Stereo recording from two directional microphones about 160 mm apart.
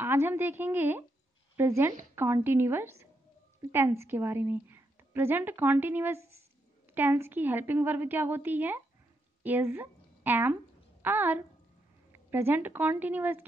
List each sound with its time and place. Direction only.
0.0 s a woman's voice: 15° right (ahead or behind)